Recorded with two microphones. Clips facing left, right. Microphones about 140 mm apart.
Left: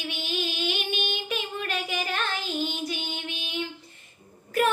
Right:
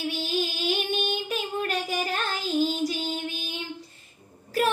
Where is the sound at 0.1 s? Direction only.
35° right (ahead or behind).